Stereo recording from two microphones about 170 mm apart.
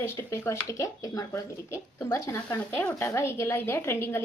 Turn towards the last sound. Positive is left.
turn(degrees=15)  # may be behind; listen again after turning